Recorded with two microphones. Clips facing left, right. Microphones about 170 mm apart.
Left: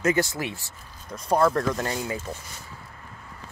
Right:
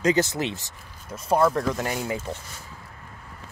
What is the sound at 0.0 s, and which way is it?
Speech, 20° right (ahead or behind).